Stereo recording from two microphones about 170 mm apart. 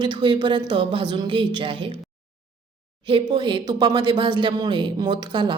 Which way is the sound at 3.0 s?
30° right (ahead or behind).